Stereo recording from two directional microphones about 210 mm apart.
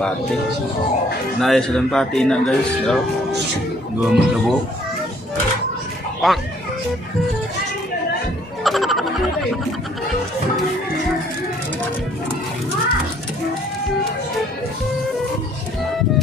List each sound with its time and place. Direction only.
1.4 s speech: centre (ahead or behind)
4.0 s speech: centre (ahead or behind)
6.2 s speech: centre (ahead or behind)
8.6 s music: centre (ahead or behind)